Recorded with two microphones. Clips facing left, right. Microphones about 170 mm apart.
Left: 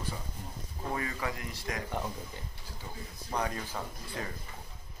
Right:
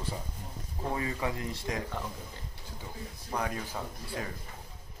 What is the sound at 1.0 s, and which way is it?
Speech, 20° right (ahead or behind).